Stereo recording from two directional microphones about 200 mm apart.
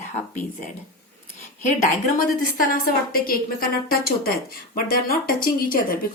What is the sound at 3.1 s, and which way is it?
A woman's voice, 45° left (ahead or behind).